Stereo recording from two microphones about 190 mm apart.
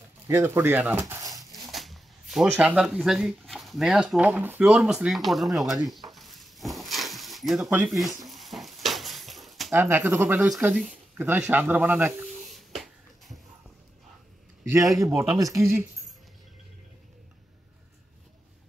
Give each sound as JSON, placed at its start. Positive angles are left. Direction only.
{"t": 0.3, "sound": "speech", "side_deg": -15}
{"t": 1.3, "sound": "speech", "side_deg": 0}
{"t": 6.0, "sound": "a sound", "side_deg": 0}
{"t": 7.9, "sound": "dishes", "side_deg": 0}
{"t": 9.8, "sound": "speech", "side_deg": -10}
{"t": 12.4, "sound": "a sound", "side_deg": 0}
{"t": 14.7, "sound": "speech", "side_deg": -15}